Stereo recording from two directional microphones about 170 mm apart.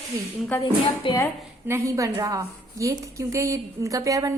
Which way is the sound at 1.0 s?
30° left (ahead or behind).